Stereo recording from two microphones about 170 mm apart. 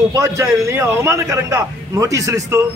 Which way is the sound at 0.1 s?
20° right (ahead or behind).